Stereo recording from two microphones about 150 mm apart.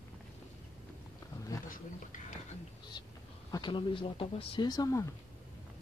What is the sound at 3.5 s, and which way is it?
Speech, 30° left (ahead or behind).